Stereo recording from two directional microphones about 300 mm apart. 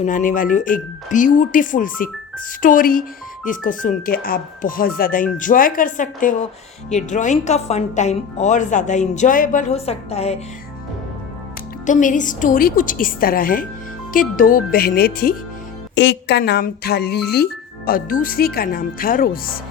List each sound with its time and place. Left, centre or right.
0.0 s speech: left
11.9 s speech: left